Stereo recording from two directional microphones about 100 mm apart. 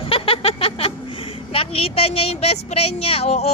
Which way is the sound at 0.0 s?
65° left (ahead or behind).